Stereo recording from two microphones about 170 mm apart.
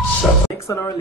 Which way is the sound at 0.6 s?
15° left (ahead or behind).